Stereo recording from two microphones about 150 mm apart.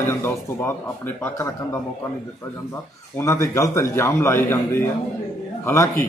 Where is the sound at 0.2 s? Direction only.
15° left (ahead or behind).